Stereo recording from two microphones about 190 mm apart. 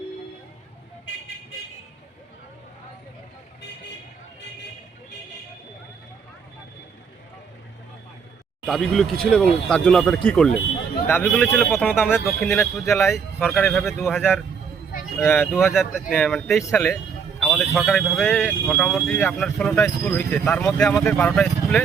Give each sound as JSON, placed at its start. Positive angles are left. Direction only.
{"t": 8.6, "sound": "speech", "side_deg": 0}
{"t": 15.7, "sound": "speech", "side_deg": 0}
{"t": 16.6, "sound": "speech", "side_deg": 15}
{"t": 17.4, "sound": "speech", "side_deg": 0}